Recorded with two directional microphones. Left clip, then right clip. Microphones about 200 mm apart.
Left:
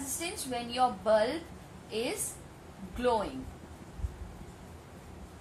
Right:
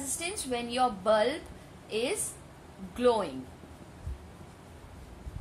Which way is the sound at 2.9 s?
50° right (ahead or behind).